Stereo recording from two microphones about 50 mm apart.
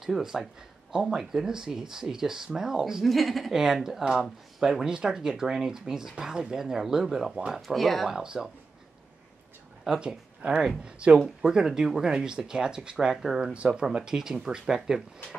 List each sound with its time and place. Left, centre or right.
0.0 s speech: centre
8.1 s speech: centre
9.8 s speech: centre
13.5 s speech: right